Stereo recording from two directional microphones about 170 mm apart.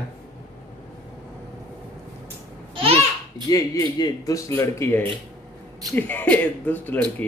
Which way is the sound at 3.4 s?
20° left (ahead or behind).